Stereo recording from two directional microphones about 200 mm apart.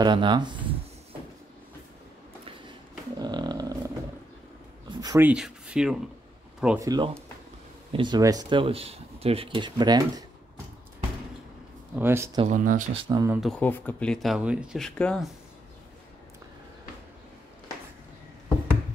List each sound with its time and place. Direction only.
0.0 s speech: 20° right (ahead or behind)
3.2 s dog: 20° right (ahead or behind)
4.8 s a sound: 20° right (ahead or behind)
5.2 s speech: 5° right (ahead or behind)
6.8 s speech: 20° right (ahead or behind)
11.9 s speech: 10° right (ahead or behind)
12.4 s speech: 40° right (ahead or behind)
12.9 s speech: 20° right (ahead or behind)
13.4 s speech: 5° left (ahead or behind)